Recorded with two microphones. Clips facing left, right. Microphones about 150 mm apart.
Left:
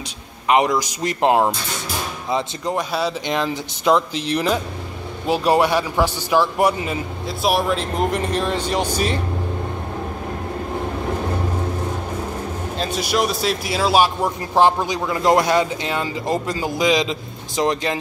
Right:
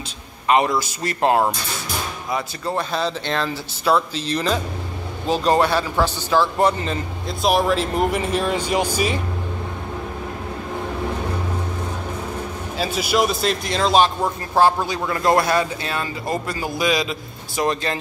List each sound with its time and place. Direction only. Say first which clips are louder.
0.5 s a man's voice: left 1 dB; 15° left (ahead or behind); by 9.2 s 10° right (ahead or behind)
12.7 s a man's voice: right 1 dB; 5° right (ahead or behind); by 17.9 s 20° left (ahead or behind)